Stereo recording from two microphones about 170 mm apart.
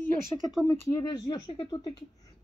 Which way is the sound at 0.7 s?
15° left (ahead or behind).